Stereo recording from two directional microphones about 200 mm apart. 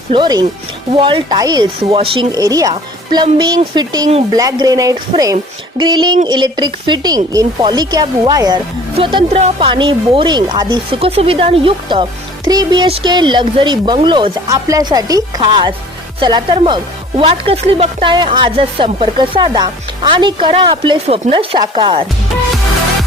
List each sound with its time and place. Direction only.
0.1 s speech: 20° right (ahead or behind)